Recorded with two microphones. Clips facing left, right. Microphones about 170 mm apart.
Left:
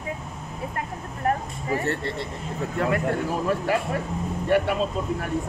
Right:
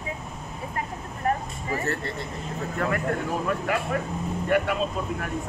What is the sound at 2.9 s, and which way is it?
Speech, 30° left (ahead or behind).